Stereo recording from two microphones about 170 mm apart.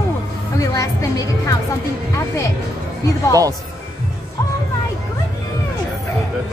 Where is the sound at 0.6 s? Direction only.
20° left (ahead or behind).